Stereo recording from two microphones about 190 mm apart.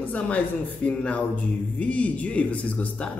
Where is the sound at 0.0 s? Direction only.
10° left (ahead or behind).